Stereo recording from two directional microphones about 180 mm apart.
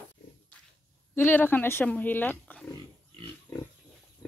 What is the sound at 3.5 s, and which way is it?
Pig, 15° left (ahead or behind).